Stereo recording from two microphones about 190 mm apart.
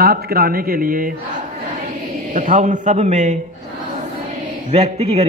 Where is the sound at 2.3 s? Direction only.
40° right (ahead or behind).